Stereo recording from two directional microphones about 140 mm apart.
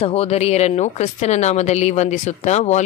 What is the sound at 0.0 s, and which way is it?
Speech, 45° left (ahead or behind).